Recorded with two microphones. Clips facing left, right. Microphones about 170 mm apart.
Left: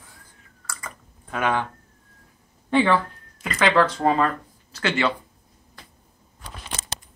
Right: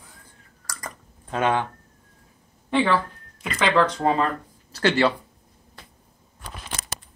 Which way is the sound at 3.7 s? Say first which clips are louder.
Even; 20° right (ahead or behind).